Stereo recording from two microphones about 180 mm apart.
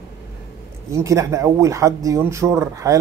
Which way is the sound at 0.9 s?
15° right (ahead or behind).